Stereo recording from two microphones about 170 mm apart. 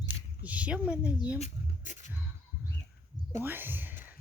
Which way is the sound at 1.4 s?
45° left (ahead or behind).